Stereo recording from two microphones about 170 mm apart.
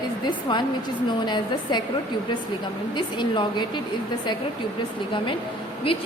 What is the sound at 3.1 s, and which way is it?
Speech, 25° left (ahead or behind).